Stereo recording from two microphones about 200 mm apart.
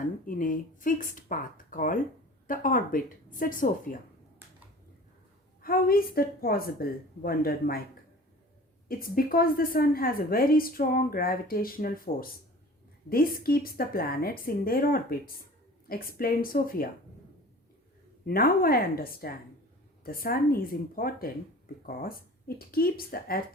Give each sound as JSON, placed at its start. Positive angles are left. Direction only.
{"t": 0.3, "sound": "a woman's voice", "side_deg": 40}
{"t": 5.6, "sound": "a woman's voice", "side_deg": 50}
{"t": 8.9, "sound": "a woman's voice", "side_deg": 45}
{"t": 18.3, "sound": "a woman's voice", "side_deg": 45}